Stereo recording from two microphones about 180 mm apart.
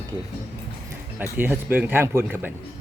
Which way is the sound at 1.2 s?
10° right (ahead or behind).